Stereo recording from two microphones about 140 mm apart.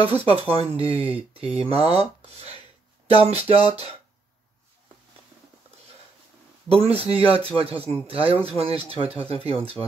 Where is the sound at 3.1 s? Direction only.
45° right (ahead or behind).